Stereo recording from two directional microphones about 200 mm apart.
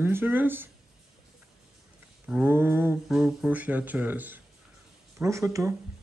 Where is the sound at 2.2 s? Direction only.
10° right (ahead or behind).